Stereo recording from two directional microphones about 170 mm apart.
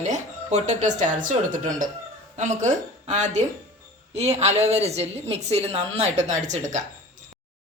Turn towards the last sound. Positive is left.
turn(degrees=-45)  # may be behind; listen again after turning